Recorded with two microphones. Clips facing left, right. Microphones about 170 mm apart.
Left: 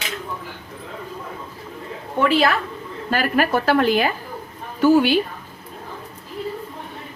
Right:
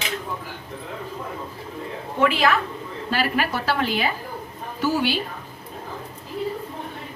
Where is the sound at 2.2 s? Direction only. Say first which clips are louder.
Left 2 dB; 35° left (ahead or behind).